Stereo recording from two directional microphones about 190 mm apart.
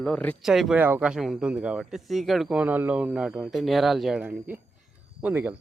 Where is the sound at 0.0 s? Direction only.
5° left (ahead or behind).